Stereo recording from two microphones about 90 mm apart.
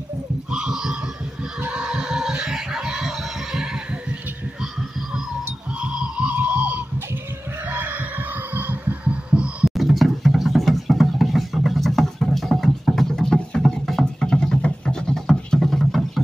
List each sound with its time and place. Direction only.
0.5 s a sound: 10° right (ahead or behind)
1.6 s music: 10° right (ahead or behind)
5.8 s music: 10° right (ahead or behind)
8.5 s heart sounds: 20° right (ahead or behind)
9.8 s music: centre (ahead or behind)